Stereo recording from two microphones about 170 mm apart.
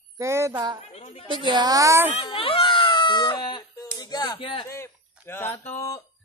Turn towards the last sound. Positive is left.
turn(degrees=20)  # may be behind; listen again after turning